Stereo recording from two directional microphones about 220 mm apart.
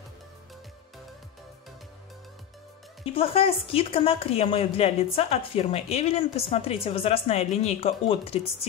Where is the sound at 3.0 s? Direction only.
25° left (ahead or behind).